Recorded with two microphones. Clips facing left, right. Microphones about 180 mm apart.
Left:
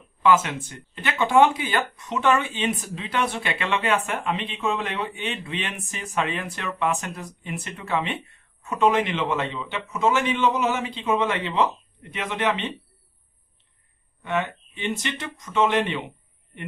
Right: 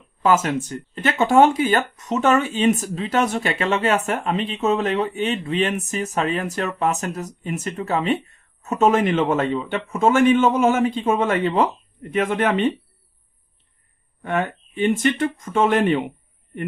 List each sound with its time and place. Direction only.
0.2 s speech: 45° right (ahead or behind)
14.2 s speech: 50° right (ahead or behind)